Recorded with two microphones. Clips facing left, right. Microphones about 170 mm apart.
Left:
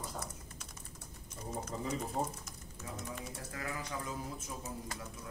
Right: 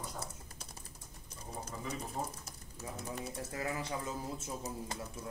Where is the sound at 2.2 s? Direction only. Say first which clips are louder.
Left 3 dB; 25° left (ahead or behind).